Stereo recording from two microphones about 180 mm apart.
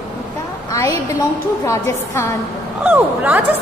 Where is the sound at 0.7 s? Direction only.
20° left (ahead or behind).